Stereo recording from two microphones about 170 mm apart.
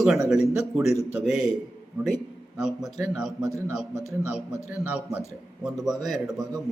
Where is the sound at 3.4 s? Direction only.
20° right (ahead or behind).